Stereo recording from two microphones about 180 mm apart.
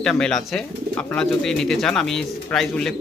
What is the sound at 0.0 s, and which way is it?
Speech, 5° left (ahead or behind).